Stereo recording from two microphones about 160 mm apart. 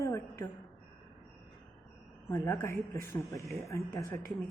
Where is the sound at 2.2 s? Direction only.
15° left (ahead or behind).